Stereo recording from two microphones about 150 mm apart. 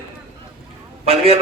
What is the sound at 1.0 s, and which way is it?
Speech, 40° right (ahead or behind).